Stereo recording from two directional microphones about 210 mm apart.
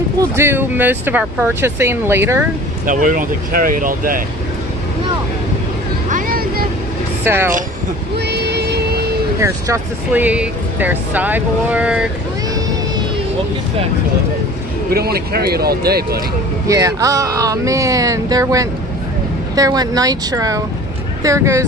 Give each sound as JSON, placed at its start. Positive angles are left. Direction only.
{"t": 0.2, "sound": "speech", "side_deg": -10}
{"t": 2.9, "sound": "speech", "side_deg": -40}
{"t": 6.0, "sound": "vehicle", "side_deg": -40}
{"t": 7.3, "sound": "speech", "side_deg": -10}
{"t": 8.3, "sound": "music", "side_deg": -50}
{"t": 9.4, "sound": "speech", "side_deg": -10}
{"t": 14.9, "sound": "speech", "side_deg": -45}
{"t": 16.6, "sound": "speech", "side_deg": -15}